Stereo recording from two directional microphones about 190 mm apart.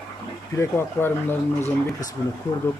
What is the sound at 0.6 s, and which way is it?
Speech, 10° left (ahead or behind).